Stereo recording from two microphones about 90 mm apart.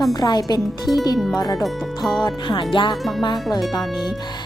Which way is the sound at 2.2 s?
60° left (ahead or behind).